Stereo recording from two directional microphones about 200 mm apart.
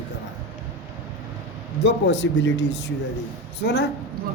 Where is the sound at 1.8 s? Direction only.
60° left (ahead or behind).